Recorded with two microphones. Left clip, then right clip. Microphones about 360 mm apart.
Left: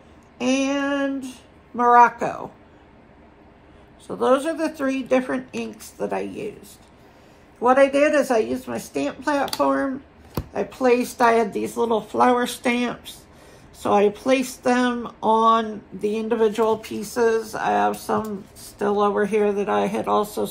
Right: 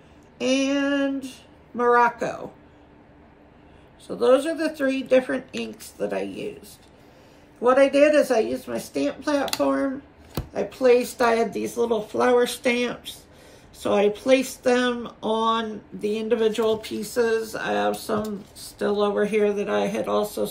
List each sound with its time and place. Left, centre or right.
0.4 s a sound: centre
4.1 s speech: centre
7.6 s speech: centre